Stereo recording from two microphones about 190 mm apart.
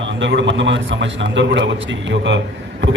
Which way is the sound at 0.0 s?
75° right (ahead or behind).